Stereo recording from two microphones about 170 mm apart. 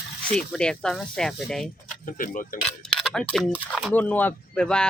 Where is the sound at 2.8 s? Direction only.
5° left (ahead or behind).